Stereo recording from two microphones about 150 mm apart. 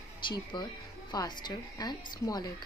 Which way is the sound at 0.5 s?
30° left (ahead or behind).